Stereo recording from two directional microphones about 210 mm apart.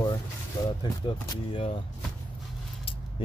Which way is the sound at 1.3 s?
25° left (ahead or behind).